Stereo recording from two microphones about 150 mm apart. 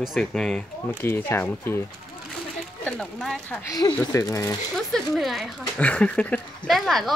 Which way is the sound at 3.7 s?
20° left (ahead or behind).